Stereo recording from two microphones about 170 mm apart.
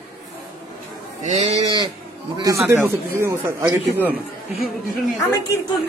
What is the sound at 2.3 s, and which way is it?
A man's voice, 20° right (ahead or behind).